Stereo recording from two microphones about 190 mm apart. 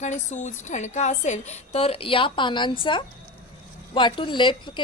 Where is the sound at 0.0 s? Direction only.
40° left (ahead or behind).